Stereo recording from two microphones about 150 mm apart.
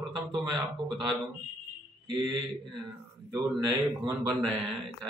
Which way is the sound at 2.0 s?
30° right (ahead or behind).